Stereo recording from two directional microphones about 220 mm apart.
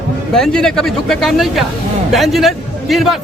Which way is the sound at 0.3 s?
5° left (ahead or behind).